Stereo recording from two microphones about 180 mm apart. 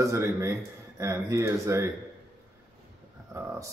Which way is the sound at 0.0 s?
15° right (ahead or behind).